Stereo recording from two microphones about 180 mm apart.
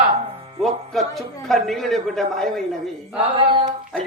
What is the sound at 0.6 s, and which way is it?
Music, centre (ahead or behind).